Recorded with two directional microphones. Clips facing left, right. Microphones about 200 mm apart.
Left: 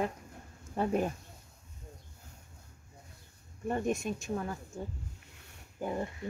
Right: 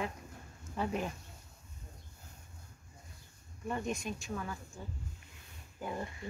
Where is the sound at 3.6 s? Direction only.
45° left (ahead or behind).